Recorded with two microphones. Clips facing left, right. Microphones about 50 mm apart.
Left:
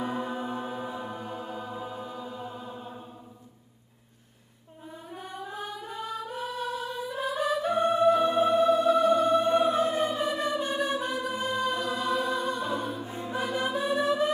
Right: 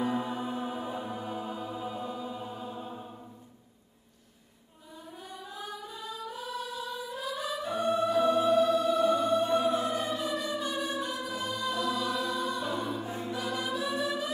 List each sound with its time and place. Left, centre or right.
0.3 s music: centre
1.8 s chant: centre
5.1 s music: left